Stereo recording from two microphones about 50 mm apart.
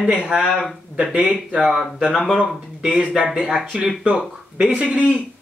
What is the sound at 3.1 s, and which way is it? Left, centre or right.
Speech, centre.